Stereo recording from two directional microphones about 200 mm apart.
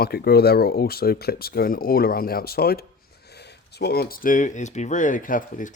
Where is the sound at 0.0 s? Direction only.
50° left (ahead or behind).